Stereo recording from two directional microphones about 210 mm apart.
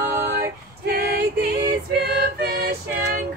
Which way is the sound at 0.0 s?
45° right (ahead or behind).